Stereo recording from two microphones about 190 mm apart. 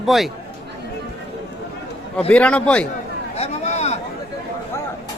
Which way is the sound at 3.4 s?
35° left (ahead or behind).